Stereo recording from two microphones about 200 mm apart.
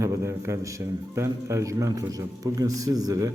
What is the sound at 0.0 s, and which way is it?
A man's voice, 15° right (ahead or behind).